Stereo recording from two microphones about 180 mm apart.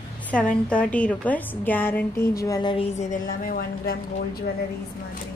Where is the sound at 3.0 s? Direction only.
45° left (ahead or behind).